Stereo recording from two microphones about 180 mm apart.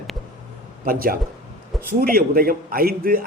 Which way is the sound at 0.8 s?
55° right (ahead or behind).